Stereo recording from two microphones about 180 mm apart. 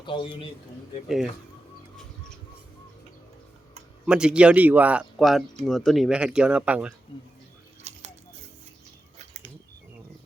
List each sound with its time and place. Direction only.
0.0 s a man's voice: 25° left (ahead or behind)
1.0 s speech: centre (ahead or behind)
4.0 s speech: 5° right (ahead or behind)
7.9 s a sound: 35° right (ahead or behind)